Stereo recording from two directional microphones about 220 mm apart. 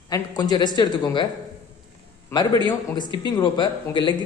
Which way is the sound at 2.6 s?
20° left (ahead or behind).